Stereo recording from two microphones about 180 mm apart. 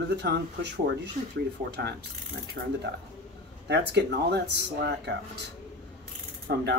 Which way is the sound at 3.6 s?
70° right (ahead or behind).